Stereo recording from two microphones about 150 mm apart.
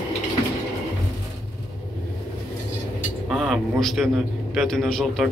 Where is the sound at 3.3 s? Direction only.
Centre (ahead or behind).